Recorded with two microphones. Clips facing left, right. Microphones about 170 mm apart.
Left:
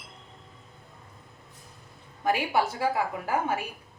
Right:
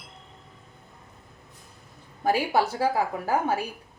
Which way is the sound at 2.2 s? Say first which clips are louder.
Right 2 dB; 35° right (ahead or behind).